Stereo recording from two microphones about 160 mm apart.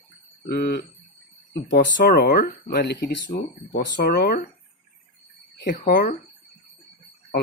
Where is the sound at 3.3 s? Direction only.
60° left (ahead or behind).